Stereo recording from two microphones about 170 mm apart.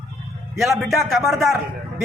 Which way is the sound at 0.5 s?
Centre (ahead or behind).